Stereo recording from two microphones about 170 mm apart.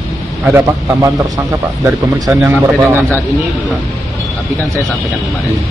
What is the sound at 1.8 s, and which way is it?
Speech, 5° right (ahead or behind).